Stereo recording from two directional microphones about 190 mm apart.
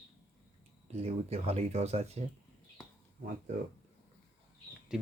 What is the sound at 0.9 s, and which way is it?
Speech, 35° right (ahead or behind).